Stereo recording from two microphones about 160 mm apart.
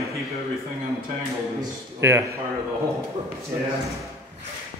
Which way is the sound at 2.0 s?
15° right (ahead or behind).